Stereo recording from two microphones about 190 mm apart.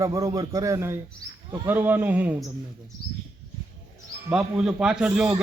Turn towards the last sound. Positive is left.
turn(degrees=-5)  # may be behind; listen again after turning